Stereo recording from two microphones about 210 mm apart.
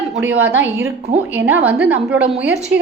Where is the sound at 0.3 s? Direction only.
70° right (ahead or behind).